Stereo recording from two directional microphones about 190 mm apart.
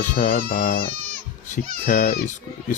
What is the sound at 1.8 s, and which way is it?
Speech, 45° left (ahead or behind).